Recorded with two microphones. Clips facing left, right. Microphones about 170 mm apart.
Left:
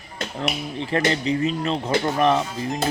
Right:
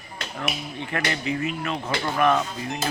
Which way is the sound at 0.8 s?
30° left (ahead or behind).